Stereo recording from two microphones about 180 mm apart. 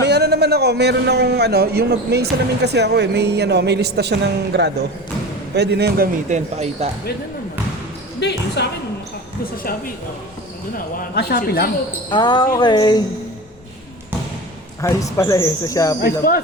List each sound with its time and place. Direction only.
0.0 s a man's voice: 65° right (ahead or behind)
6.2 s speech: 40° right (ahead or behind)
8.2 s speech: 70° left (ahead or behind)
11.1 s a woman's voice: 60° left (ahead or behind)
12.1 s speech: 25° left (ahead or behind)
14.8 s speech: 15° left (ahead or behind)
16.0 s a woman's voice: 55° left (ahead or behind)